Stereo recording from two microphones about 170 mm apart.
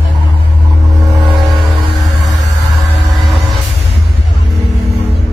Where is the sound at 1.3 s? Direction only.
Centre (ahead or behind).